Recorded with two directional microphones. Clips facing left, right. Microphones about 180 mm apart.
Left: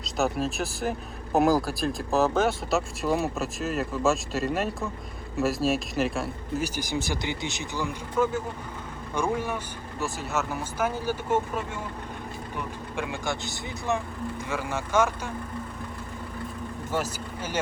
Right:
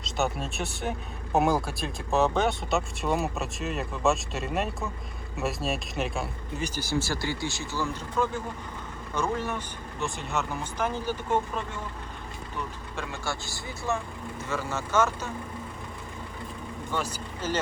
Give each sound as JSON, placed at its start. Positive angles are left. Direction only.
{"t": 0.0, "sound": "speech", "side_deg": 0}
{"t": 6.7, "sound": "speech", "side_deg": 15}